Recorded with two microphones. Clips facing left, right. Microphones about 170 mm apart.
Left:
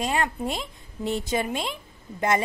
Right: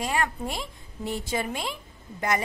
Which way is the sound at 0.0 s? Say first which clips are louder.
Left 2 dB; 25° left (ahead or behind).